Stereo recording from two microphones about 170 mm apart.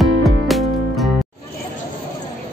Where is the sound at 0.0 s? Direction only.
Centre (ahead or behind).